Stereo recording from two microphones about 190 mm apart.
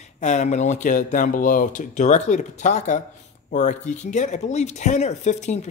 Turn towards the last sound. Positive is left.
turn(degrees=35)  # may be behind; listen again after turning